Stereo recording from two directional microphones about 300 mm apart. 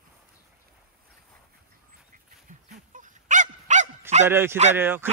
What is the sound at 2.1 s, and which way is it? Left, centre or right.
Dog, right.